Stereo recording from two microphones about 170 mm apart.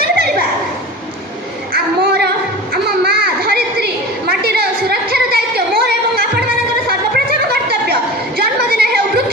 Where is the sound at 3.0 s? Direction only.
65° right (ahead or behind).